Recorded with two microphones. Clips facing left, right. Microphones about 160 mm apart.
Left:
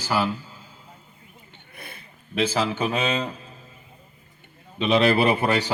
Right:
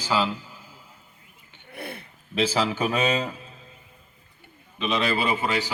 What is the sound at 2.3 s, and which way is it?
Speech, 30° right (ahead or behind).